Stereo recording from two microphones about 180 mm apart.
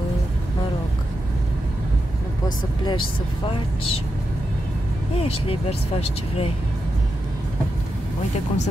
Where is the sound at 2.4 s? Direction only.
25° left (ahead or behind).